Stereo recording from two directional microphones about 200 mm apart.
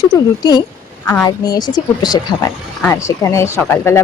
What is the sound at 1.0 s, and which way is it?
A woman's voice, 15° left (ahead or behind).